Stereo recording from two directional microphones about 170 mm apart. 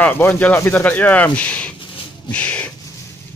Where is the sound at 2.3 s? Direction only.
10° left (ahead or behind).